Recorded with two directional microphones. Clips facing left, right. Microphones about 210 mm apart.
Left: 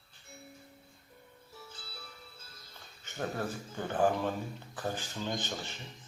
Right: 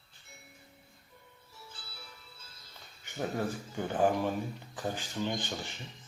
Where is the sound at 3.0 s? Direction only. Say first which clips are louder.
Right 2 dB; 15° right (ahead or behind).